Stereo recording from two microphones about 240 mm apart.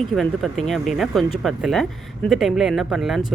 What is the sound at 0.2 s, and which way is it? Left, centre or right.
A woman's voice, centre.